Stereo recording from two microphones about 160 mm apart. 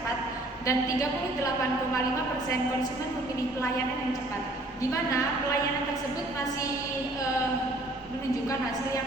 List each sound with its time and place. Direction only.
0.6 s a woman's voice: 20° left (ahead or behind)